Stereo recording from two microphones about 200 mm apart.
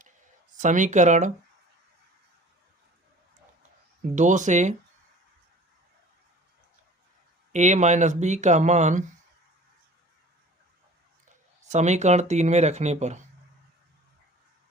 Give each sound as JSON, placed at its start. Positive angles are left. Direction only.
{"t": 0.6, "sound": "speech", "side_deg": -40}
{"t": 4.1, "sound": "speech", "side_deg": -40}
{"t": 7.5, "sound": "speech", "side_deg": -35}
{"t": 11.6, "sound": "speech", "side_deg": -35}